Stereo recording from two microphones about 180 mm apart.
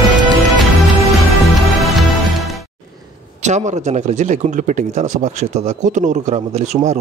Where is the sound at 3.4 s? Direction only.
40° right (ahead or behind).